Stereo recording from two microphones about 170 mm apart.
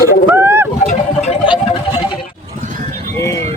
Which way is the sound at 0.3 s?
15° right (ahead or behind).